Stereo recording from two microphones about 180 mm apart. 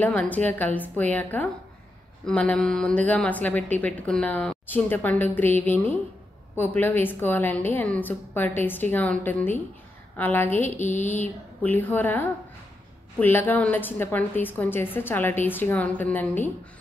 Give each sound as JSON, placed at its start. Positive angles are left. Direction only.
{"t": 0.0, "sound": "a woman's voice", "side_deg": 10}